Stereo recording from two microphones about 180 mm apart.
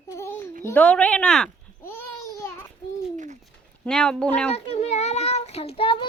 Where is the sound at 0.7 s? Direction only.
10° left (ahead or behind).